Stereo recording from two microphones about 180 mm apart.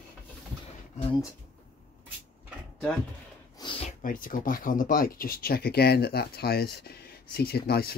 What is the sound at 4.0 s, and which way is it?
Speech, 50° left (ahead or behind).